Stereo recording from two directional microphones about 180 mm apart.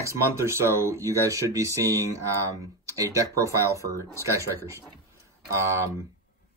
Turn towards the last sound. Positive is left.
turn(degrees=-15)  # may be behind; listen again after turning